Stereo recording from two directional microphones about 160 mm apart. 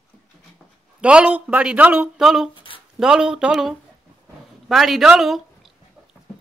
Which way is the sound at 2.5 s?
35° left (ahead or behind).